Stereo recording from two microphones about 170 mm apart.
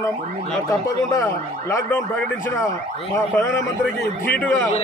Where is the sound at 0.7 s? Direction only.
20° left (ahead or behind).